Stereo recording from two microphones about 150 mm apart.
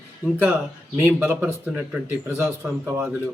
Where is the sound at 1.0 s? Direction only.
15° right (ahead or behind).